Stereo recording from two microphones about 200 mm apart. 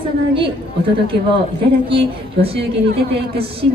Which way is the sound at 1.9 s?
25° right (ahead or behind).